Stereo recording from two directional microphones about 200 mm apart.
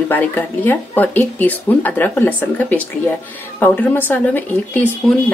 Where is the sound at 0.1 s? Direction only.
10° left (ahead or behind).